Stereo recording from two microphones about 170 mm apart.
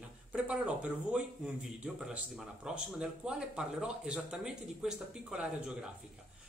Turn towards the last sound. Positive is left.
turn(degrees=-5)  # may be behind; listen again after turning